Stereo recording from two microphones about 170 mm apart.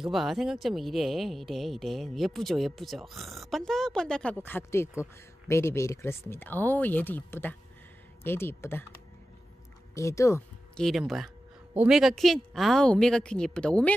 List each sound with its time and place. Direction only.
0.0 s speech: centre (ahead or behind); by 8.8 s 15° left (ahead or behind)
9.9 s speech: 15° left (ahead or behind)
10.8 s speech: centre (ahead or behind)